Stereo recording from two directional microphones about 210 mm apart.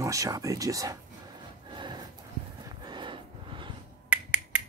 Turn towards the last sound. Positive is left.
turn(degrees=-5)  # may be behind; listen again after turning